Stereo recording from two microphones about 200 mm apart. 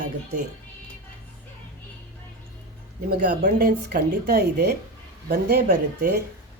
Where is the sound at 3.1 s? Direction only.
45° right (ahead or behind).